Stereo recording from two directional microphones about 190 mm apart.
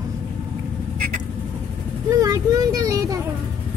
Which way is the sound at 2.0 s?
15° right (ahead or behind).